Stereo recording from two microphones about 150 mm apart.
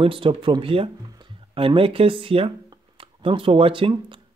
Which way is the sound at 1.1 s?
30° right (ahead or behind).